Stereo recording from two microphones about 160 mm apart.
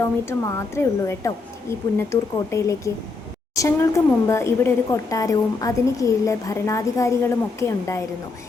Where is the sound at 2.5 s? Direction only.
20° left (ahead or behind).